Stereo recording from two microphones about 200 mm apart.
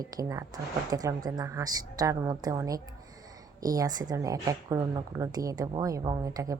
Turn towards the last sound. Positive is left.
turn(degrees=-15)  # may be behind; listen again after turning